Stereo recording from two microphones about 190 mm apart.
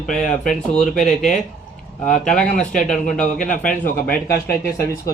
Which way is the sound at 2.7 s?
40° left (ahead or behind).